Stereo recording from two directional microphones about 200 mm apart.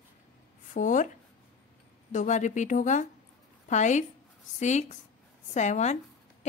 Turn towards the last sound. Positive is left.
turn(degrees=35)  # may be behind; listen again after turning